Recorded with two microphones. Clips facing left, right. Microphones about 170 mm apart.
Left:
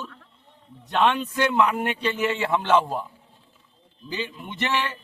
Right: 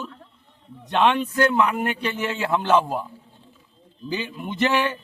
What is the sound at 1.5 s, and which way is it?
Speech, 5° right (ahead or behind).